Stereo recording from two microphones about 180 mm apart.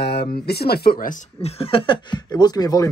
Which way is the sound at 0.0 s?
65° left (ahead or behind).